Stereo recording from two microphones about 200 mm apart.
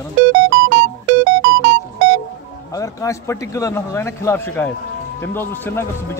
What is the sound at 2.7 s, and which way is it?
A man's voice, 15° left (ahead or behind).